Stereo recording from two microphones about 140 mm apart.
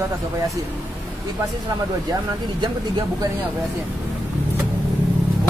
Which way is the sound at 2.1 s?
30° right (ahead or behind).